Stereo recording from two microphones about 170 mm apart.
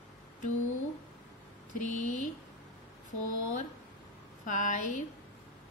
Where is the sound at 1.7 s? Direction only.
45° left (ahead or behind).